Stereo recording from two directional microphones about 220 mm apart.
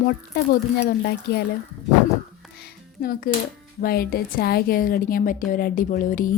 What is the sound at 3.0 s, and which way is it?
A woman's voice, 40° left (ahead or behind).